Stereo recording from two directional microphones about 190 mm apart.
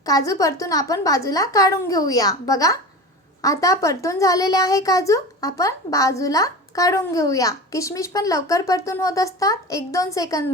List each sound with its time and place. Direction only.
0.0 s a woman's voice: 20° left (ahead or behind)